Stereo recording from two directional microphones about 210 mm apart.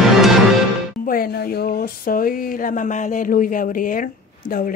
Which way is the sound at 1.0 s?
45° left (ahead or behind).